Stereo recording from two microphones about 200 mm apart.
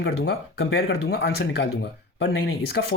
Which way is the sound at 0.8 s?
55° left (ahead or behind).